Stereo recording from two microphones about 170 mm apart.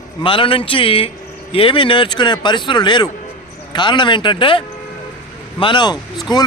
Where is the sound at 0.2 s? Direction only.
30° left (ahead or behind).